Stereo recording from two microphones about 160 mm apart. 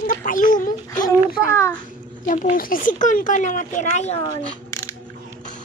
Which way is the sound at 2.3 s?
55° left (ahead or behind).